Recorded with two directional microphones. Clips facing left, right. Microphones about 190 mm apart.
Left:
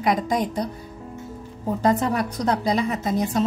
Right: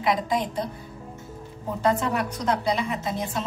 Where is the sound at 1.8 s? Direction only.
40° left (ahead or behind).